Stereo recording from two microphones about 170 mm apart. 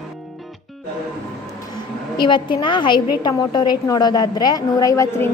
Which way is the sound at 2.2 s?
25° left (ahead or behind).